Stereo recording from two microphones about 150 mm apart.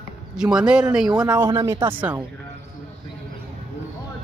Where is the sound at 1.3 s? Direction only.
15° right (ahead or behind).